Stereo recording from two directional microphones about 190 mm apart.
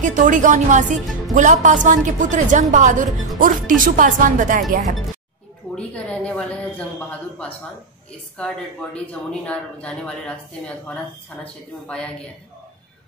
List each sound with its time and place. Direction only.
0.0 s a woman's voice: 40° right (ahead or behind)
5.8 s speech: 5° left (ahead or behind)
8.9 s speech: 5° left (ahead or behind)